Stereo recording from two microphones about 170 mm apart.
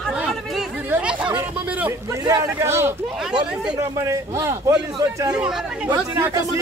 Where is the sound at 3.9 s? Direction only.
20° right (ahead or behind).